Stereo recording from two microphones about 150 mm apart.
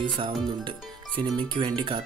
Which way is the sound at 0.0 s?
35° right (ahead or behind).